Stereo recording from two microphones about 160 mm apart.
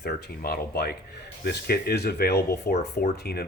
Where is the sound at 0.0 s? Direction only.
75° left (ahead or behind).